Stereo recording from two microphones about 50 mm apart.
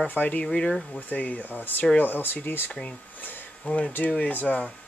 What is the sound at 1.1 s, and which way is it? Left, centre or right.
Speech, left.